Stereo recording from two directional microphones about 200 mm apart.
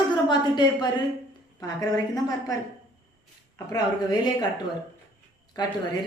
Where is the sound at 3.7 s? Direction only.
20° left (ahead or behind).